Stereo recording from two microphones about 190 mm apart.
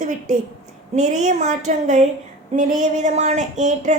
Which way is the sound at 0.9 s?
40° right (ahead or behind).